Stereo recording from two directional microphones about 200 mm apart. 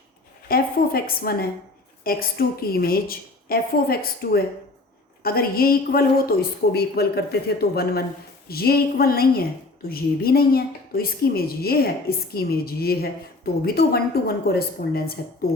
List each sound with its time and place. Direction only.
0.4 s a woman's voice: 50° left (ahead or behind)